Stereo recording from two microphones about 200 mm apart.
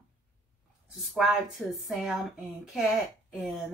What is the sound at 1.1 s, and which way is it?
Speech, 5° right (ahead or behind).